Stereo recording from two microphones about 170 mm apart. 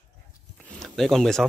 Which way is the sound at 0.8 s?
Centre (ahead or behind).